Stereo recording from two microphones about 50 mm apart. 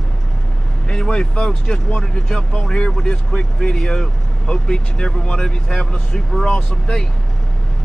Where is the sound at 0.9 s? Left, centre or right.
Centre.